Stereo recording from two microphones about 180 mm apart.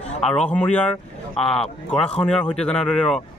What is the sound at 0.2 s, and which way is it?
A man's voice, 5° left (ahead or behind).